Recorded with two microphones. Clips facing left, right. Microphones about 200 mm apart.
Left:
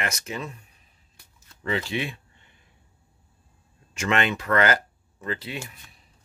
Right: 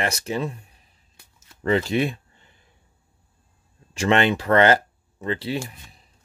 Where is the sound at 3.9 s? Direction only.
30° right (ahead or behind).